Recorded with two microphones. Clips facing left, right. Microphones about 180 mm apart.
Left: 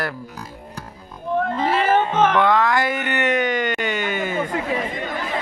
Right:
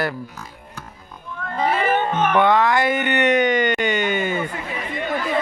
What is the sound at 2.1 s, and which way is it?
Music, 90° left.